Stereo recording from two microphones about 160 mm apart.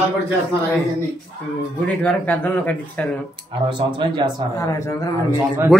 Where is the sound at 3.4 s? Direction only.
30° right (ahead or behind).